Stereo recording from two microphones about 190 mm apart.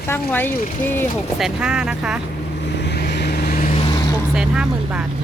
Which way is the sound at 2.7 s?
60° left (ahead or behind).